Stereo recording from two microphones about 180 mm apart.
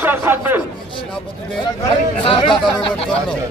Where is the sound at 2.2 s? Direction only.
30° left (ahead or behind).